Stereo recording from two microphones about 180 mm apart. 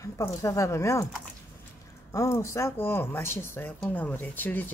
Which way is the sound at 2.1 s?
15° left (ahead or behind).